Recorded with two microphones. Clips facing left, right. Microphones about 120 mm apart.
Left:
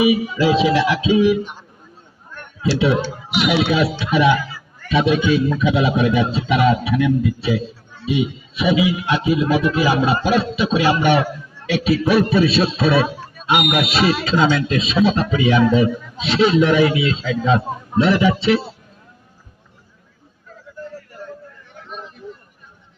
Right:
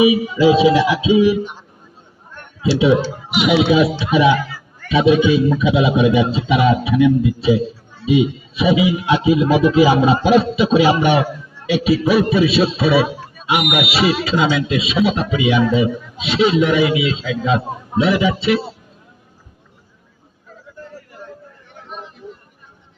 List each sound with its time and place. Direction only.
0.0 s a man's voice: 15° right (ahead or behind)
2.6 s a man's voice: 15° right (ahead or behind)